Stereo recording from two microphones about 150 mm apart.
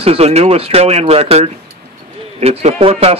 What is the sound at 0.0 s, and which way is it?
Speech, 40° right (ahead or behind).